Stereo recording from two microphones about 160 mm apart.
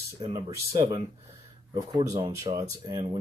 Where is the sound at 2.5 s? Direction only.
30° right (ahead or behind).